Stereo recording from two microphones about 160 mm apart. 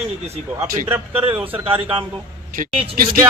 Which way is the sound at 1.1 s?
35° right (ahead or behind).